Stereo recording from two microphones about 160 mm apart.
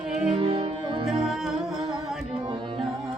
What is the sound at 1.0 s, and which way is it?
Music, 5° right (ahead or behind).